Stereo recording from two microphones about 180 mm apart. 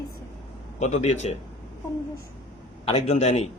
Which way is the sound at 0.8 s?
40° left (ahead or behind).